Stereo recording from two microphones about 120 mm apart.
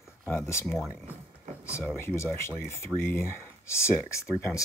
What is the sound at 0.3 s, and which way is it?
Speech, 20° left (ahead or behind).